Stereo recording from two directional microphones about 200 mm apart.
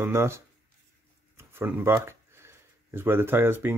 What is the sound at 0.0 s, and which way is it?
Speech, 15° right (ahead or behind).